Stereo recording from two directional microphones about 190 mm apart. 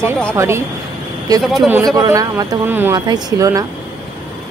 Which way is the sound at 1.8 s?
20° right (ahead or behind).